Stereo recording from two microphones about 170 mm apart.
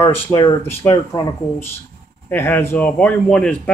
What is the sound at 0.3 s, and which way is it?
Speech, 20° left (ahead or behind).